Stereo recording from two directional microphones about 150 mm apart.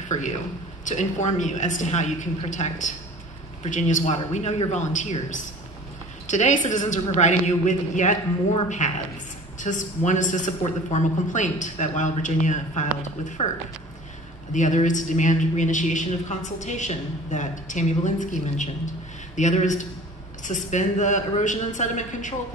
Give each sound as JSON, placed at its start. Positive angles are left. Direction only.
{"t": 0.8, "sound": "a woman's voice", "side_deg": 55}
{"t": 14.5, "sound": "a man's voice", "side_deg": 55}